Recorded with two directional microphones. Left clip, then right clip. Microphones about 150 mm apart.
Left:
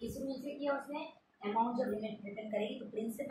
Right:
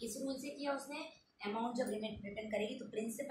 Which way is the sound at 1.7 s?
10° right (ahead or behind).